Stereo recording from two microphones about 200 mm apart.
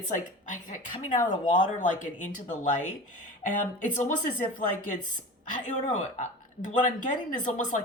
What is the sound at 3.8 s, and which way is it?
Speech, 40° left (ahead or behind).